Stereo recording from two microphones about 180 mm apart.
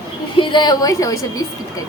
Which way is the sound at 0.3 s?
25° left (ahead or behind).